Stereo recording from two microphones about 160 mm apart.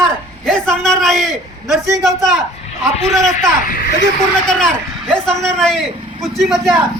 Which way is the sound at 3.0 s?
Centre (ahead or behind).